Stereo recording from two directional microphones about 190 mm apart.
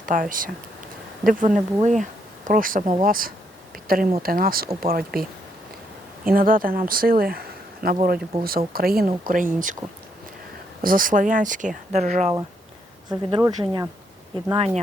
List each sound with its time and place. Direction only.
0.0 s speech: 45° right (ahead or behind)
6.2 s speech: 50° right (ahead or behind)
10.8 s speech: 45° right (ahead or behind)
13.1 s speech: 20° right (ahead or behind)